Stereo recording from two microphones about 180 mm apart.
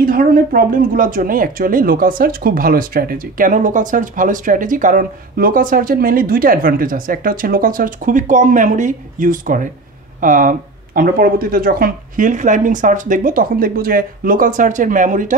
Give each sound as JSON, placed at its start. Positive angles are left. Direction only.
{"t": 0.0, "sound": "speech", "side_deg": -50}